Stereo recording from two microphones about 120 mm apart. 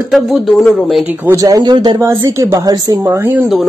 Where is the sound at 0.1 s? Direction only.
Centre (ahead or behind).